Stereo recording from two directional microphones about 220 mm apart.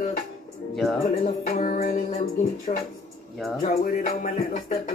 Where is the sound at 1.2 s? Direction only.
30° left (ahead or behind).